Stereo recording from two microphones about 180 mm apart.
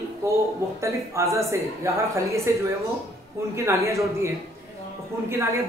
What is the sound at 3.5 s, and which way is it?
Speech, 15° right (ahead or behind).